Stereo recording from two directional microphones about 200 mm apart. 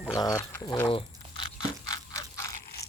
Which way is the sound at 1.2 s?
30° right (ahead or behind).